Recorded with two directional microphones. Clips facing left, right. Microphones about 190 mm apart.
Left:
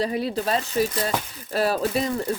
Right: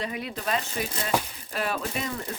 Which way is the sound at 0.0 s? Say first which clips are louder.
Left 7 dB; 35° left (ahead or behind).